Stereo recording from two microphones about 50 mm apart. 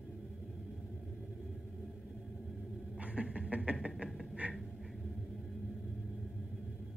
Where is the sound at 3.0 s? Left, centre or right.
Right.